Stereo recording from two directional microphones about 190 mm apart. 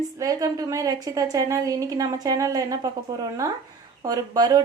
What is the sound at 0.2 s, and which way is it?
A woman's voice, 20° right (ahead or behind).